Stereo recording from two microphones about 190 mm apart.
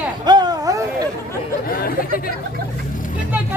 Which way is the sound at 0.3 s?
20° right (ahead or behind).